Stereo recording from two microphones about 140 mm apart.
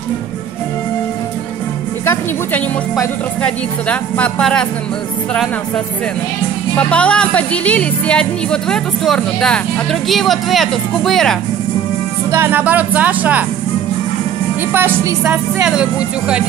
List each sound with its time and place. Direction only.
2.0 s a woman's voice: 15° left (ahead or behind)
6.9 s speech: 10° left (ahead or behind)
12.3 s speech: 15° right (ahead or behind)
14.7 s speech: 15° right (ahead or behind)